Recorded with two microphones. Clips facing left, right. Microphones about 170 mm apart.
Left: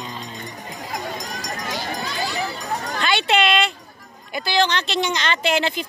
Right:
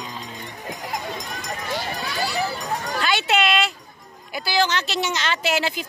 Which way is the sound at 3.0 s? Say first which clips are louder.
Left 2 dB; 5° right (ahead or behind).